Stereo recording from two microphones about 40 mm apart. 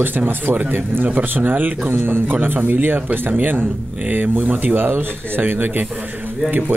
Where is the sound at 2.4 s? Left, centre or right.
Right.